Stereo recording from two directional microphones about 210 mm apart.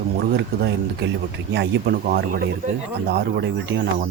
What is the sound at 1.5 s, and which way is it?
Speech, 50° right (ahead or behind).